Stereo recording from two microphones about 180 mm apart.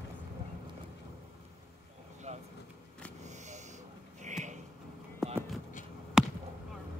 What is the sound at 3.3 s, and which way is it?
Sniff, 40° right (ahead or behind).